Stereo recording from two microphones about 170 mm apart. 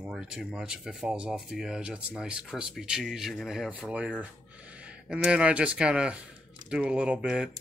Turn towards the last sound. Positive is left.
turn(degrees=-5)  # may be behind; listen again after turning